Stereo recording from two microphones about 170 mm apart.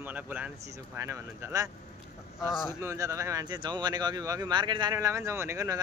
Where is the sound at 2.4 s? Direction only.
5° right (ahead or behind).